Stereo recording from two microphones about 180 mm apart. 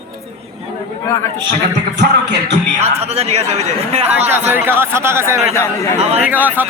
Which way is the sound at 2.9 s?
35° right (ahead or behind).